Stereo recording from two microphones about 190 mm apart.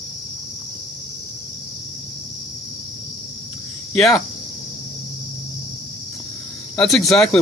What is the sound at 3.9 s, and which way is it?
Speech, centre (ahead or behind).